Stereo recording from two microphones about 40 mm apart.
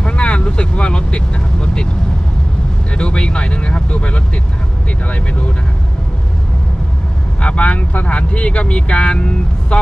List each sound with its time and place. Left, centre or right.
0.0 s vehicle: left
2.9 s speech: left
7.4 s speech: left